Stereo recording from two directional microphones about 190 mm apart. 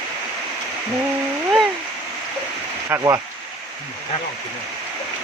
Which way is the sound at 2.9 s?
15° right (ahead or behind).